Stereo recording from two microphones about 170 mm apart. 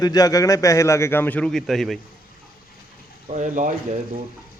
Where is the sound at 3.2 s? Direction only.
45° right (ahead or behind).